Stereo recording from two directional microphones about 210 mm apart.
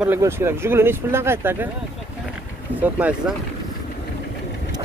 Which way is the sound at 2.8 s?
5° right (ahead or behind).